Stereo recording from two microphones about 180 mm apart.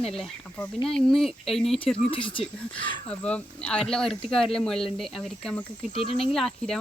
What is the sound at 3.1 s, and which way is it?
Speech, 5° left (ahead or behind).